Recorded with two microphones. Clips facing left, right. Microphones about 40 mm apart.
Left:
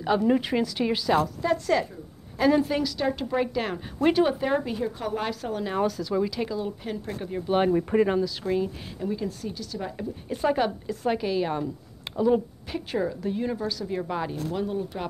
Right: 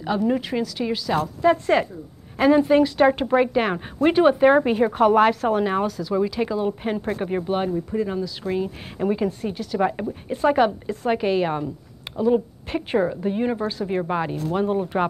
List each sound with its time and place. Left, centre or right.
0.0 s speech: centre
1.4 s a woman's voice: right
2.3 s a woman's voice: right
2.8 s a woman's voice: right
5.9 s speech: centre
6.5 s a woman's voice: right
7.9 s speech: left
8.5 s speech: centre
8.9 s a woman's voice: right
10.4 s a woman's voice: right